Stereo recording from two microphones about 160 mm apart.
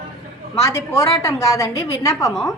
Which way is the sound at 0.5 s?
15° left (ahead or behind).